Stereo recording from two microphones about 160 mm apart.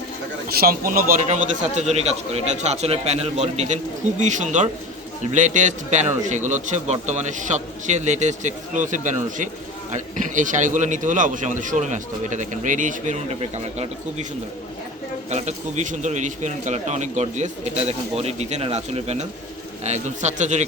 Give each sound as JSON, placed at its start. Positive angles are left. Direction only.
{"t": 0.4, "sound": "a man's voice", "side_deg": -65}
{"t": 1.7, "sound": "a man's voice", "side_deg": -45}
{"t": 15.3, "sound": "a man's voice", "side_deg": -45}